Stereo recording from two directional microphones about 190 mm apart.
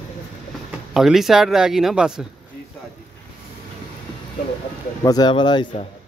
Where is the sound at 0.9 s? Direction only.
Centre (ahead or behind).